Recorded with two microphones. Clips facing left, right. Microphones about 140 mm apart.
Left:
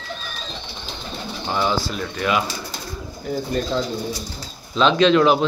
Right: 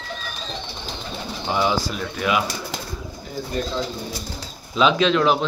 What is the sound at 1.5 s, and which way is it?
Bird, 10° right (ahead or behind).